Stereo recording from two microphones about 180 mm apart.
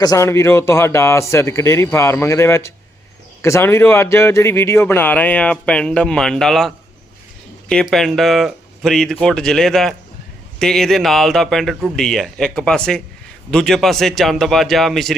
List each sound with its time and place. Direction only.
0.0 s a man's voice: 20° left (ahead or behind); by 15.1 s centre (ahead or behind)